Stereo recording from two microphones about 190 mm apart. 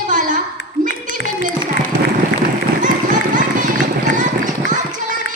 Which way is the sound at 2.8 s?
45° right (ahead or behind).